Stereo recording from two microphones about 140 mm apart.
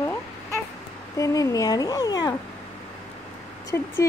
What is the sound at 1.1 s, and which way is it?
Speech, 25° left (ahead or behind).